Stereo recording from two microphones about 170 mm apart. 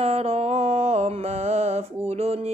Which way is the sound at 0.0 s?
35° right (ahead or behind).